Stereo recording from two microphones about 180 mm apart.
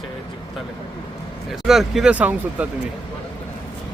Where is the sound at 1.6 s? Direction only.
Centre (ahead or behind).